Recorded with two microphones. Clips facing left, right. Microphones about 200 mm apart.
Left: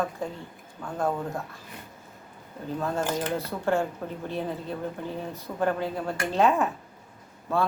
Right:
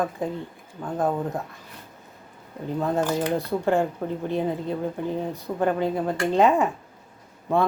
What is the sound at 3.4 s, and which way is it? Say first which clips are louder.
Speech: right 4 dB; 15° right (ahead or behind).